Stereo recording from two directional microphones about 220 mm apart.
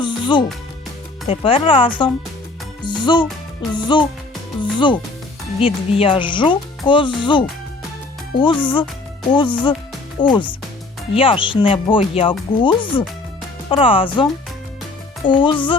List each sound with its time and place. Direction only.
0.0 s music: 20° left (ahead or behind)
1.3 s speech: 25° left (ahead or behind)
15.3 s speech: 20° left (ahead or behind)